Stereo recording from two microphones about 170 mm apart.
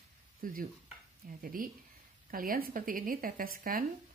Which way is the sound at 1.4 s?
55° right (ahead or behind).